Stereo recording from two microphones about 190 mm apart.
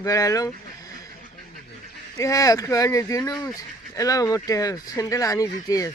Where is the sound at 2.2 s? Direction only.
20° left (ahead or behind).